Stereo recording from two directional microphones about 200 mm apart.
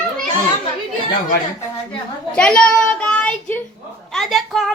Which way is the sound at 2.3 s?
5° left (ahead or behind).